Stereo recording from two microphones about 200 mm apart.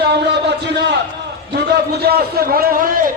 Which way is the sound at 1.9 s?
50° right (ahead or behind).